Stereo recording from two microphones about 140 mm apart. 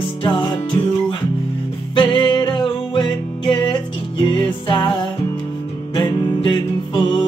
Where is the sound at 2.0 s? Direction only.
35° left (ahead or behind).